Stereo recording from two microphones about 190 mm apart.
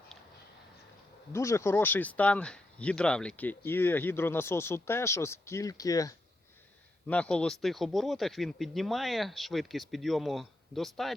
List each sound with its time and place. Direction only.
1.3 s speech: 15° left (ahead or behind)
7.1 s speech: 5° left (ahead or behind)